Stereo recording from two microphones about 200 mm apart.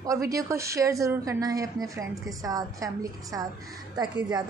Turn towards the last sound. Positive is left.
turn(degrees=-20)  # may be behind; listen again after turning